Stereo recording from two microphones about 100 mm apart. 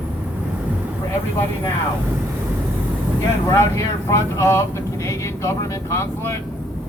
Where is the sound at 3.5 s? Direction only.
30° left (ahead or behind).